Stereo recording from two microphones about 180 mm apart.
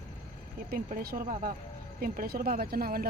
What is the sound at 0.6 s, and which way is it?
A woman's voice, 55° right (ahead or behind).